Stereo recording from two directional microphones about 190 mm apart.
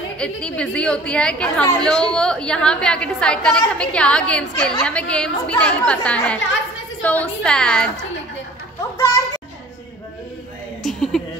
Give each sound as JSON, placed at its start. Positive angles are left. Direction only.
{"t": 0.2, "sound": "a woman's voice", "side_deg": 5}
{"t": 8.9, "sound": "children playing", "side_deg": 15}
{"t": 10.8, "sound": "a sound", "side_deg": 0}